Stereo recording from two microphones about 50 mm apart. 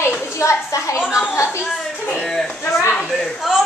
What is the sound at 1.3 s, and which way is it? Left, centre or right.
Speech, left.